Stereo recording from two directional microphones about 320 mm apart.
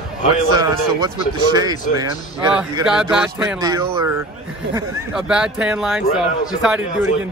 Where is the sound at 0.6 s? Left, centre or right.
Centre.